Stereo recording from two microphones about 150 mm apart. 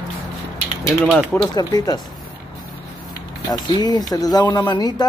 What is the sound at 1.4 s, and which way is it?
Speech, 25° left (ahead or behind).